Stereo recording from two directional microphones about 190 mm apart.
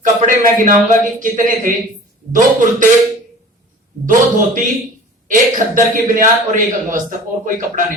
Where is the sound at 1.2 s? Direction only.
45° right (ahead or behind).